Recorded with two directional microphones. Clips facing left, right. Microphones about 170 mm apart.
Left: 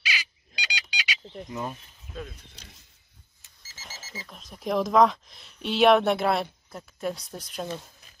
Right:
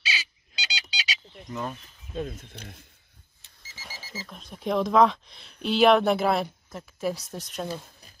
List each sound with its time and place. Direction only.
0.0 s squeak: 30° right (ahead or behind)
1.5 s speech: 15° left (ahead or behind)
2.3 s speech: 55° right (ahead or behind)
3.7 s alarm clock: 10° right (ahead or behind)
4.5 s speech: centre (ahead or behind)